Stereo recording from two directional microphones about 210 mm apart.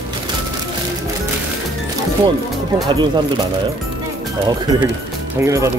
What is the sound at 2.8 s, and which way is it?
Speech, 20° right (ahead or behind).